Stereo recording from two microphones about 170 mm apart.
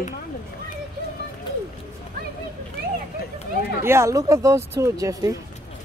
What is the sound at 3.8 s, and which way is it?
Speech, 15° right (ahead or behind).